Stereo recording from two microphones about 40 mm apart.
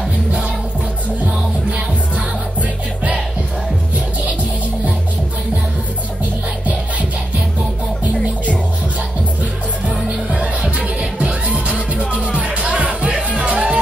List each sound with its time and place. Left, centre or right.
10.0 s music: right